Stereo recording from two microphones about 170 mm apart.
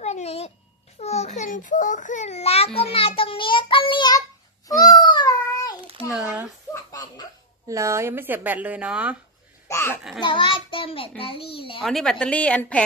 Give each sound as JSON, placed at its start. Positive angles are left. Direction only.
{"t": 0.0, "sound": "a sound", "side_deg": 40}
{"t": 0.9, "sound": "a child's voice", "side_deg": 40}
{"t": 4.9, "sound": "a sound", "side_deg": 25}
{"t": 7.6, "sound": "speech", "side_deg": -15}
{"t": 9.7, "sound": "a child's voice", "side_deg": 15}
{"t": 10.2, "sound": "a child's voice", "side_deg": 30}
{"t": 11.8, "sound": "a woman's voice", "side_deg": 0}